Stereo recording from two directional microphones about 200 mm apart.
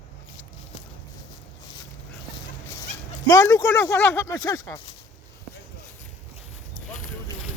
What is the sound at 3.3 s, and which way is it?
Speech, 15° left (ahead or behind).